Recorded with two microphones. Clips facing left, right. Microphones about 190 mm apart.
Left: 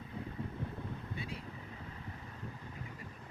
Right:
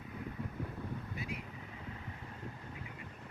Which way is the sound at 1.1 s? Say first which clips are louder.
Even; 30° left (ahead or behind).